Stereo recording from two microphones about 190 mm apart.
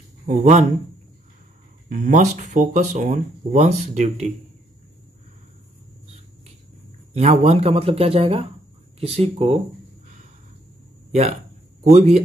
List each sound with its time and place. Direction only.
0.3 s speech: 40° right (ahead or behind)
1.9 s speech: 40° right (ahead or behind)
7.2 s speech: 35° right (ahead or behind)
11.1 s speech: 35° right (ahead or behind)